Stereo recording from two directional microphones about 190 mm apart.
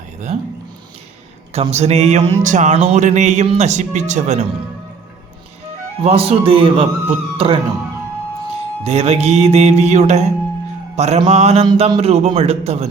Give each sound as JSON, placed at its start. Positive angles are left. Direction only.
{"t": 1.5, "sound": "music", "side_deg": -35}
{"t": 6.0, "sound": "a man's voice", "side_deg": -30}
{"t": 8.8, "sound": "music", "side_deg": -35}